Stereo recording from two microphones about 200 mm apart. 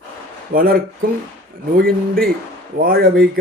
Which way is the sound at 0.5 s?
45° right (ahead or behind).